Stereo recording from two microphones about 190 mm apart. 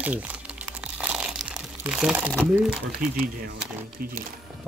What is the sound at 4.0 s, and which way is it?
Speech, 50° right (ahead or behind).